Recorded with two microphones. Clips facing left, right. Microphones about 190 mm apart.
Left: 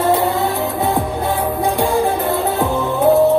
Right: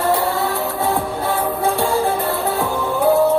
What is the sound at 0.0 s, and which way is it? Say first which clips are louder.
Music: left 3 dB; 20° left (ahead or behind).